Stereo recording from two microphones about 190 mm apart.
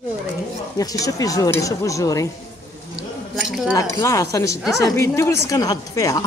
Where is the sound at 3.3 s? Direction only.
Centre (ahead or behind).